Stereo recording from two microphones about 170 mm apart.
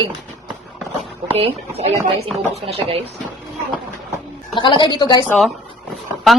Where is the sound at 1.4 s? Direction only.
35° right (ahead or behind).